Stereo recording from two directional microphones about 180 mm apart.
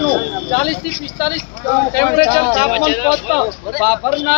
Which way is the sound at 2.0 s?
10° left (ahead or behind).